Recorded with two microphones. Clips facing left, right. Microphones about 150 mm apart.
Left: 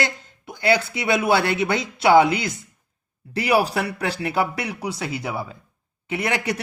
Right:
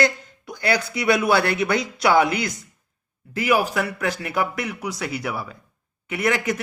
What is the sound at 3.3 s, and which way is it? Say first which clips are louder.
Speech: left 1 dB; 35° left (ahead or behind).